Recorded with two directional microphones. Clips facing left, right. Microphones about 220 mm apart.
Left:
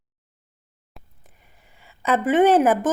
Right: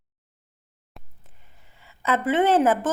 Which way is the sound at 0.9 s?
Centre (ahead or behind).